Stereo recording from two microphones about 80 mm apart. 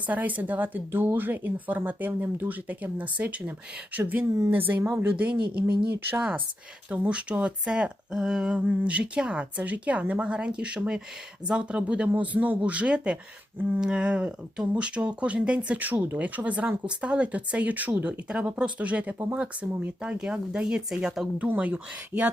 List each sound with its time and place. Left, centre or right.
0.0 s speech: centre